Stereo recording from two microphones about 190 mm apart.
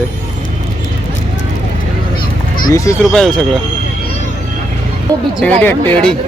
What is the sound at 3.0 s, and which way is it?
Speech, centre (ahead or behind).